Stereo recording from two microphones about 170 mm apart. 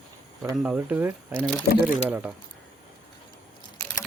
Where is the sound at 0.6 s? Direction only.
10° right (ahead or behind).